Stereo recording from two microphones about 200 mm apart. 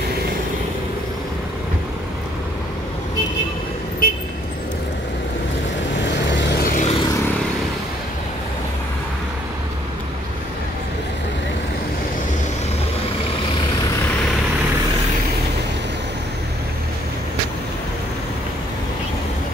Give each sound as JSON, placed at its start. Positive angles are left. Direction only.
{"t": 4.0, "sound": "vehicle", "side_deg": 45}
{"t": 6.0, "sound": "vehicle", "side_deg": 60}